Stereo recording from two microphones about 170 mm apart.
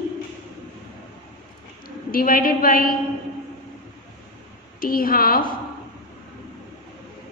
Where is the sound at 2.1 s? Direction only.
55° left (ahead or behind).